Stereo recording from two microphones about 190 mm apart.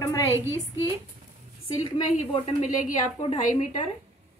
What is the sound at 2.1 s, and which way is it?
A woman's voice, 35° left (ahead or behind).